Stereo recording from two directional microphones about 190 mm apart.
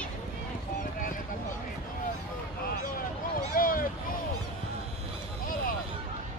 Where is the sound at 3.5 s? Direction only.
50° left (ahead or behind).